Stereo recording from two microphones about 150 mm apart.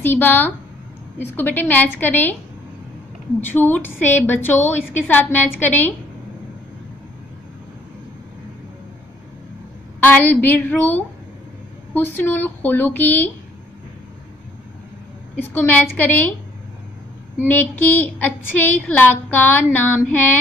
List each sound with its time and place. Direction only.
0.0 s a woman's voice: 15° left (ahead or behind)
3.4 s a woman's voice: 15° left (ahead or behind)
9.9 s a woman's voice: 10° left (ahead or behind)
15.3 s a woman's voice: 10° left (ahead or behind)
17.5 s a woman's voice: 15° left (ahead or behind)